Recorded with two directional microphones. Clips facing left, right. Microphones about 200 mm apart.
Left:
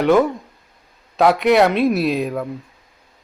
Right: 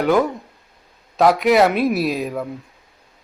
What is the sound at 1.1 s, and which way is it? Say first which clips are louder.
Speech: even; centre (ahead or behind).